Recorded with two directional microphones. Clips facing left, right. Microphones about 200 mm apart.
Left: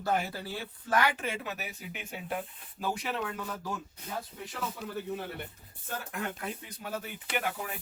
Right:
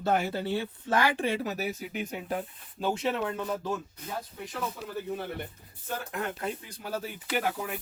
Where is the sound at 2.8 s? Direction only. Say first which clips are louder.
Right 5 dB; 25° right (ahead or behind).